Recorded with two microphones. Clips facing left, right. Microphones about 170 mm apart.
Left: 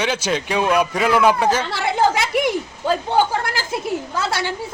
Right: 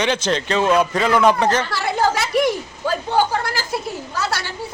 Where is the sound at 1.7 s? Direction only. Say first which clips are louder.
Left 1 dB; 20° left (ahead or behind).